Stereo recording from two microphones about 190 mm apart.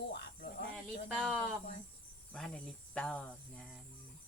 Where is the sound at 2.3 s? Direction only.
5° left (ahead or behind).